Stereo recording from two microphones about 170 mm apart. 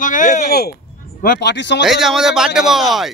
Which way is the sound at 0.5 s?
65° left (ahead or behind).